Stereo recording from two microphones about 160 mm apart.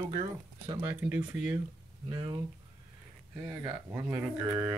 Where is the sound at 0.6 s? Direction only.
10° right (ahead or behind).